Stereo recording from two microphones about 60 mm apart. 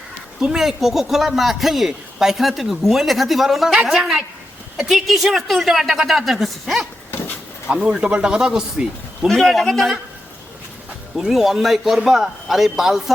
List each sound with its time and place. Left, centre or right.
0.3 s a man's voice: centre
7.1 s a sound: left
7.7 s speech: centre
9.2 s a man's voice: centre
11.2 s a man's voice: centre